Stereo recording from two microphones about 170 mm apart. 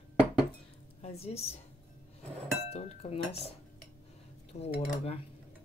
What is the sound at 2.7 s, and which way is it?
Speech, 35° left (ahead or behind).